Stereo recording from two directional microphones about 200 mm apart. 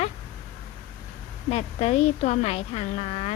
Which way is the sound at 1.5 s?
35° left (ahead or behind).